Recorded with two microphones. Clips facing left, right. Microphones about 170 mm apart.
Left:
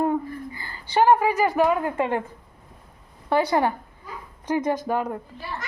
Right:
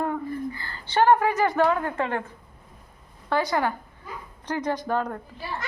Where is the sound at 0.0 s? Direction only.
20° left (ahead or behind).